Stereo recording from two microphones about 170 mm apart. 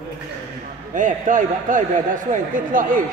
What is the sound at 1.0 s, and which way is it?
A man's voice, 50° right (ahead or behind).